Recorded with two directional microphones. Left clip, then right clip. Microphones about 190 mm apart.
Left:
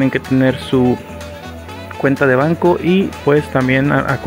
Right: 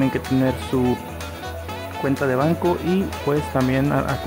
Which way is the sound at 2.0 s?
25° left (ahead or behind).